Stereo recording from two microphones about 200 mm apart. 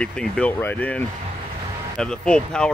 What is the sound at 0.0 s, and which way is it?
Speech, 5° left (ahead or behind).